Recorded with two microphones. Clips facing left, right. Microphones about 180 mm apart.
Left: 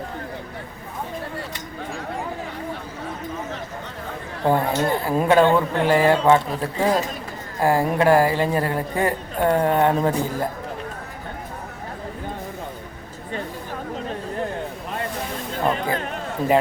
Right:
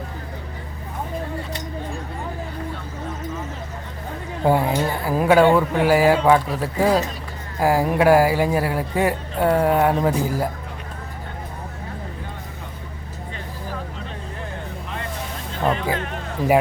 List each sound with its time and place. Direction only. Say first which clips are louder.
4.4 s speech: right 1 dB; 10° right (ahead or behind)